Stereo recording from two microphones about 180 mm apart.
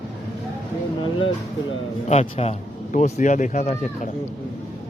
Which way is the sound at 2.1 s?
35° left (ahead or behind).